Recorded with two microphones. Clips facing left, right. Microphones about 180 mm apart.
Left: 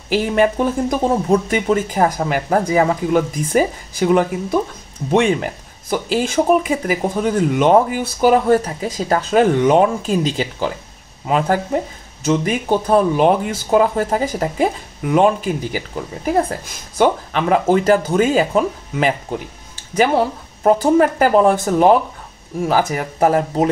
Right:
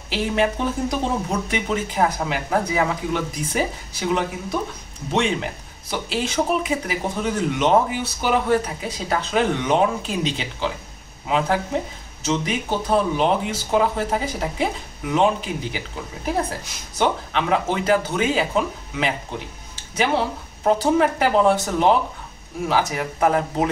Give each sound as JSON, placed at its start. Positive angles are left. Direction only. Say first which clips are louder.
{"t": 0.1, "sound": "speech", "louder": "left 6 dB", "side_deg": 50}